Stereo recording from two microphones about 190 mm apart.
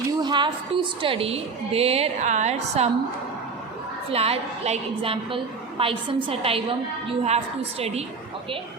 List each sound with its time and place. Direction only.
0.2 s a woman's voice: 25° right (ahead or behind)
4.1 s a woman's voice: 30° right (ahead or behind)